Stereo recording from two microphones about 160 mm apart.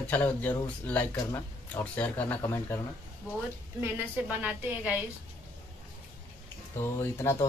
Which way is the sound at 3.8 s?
10° right (ahead or behind).